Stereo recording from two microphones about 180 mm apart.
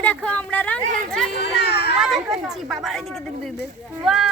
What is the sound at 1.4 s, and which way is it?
Children playing, 65° left (ahead or behind).